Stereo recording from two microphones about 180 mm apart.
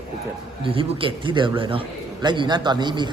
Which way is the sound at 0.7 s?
30° right (ahead or behind).